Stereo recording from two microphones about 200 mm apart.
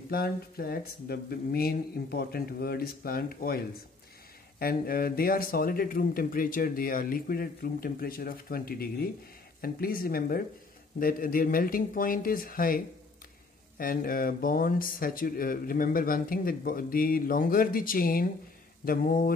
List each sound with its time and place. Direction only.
0.1 s speech: 50° left (ahead or behind)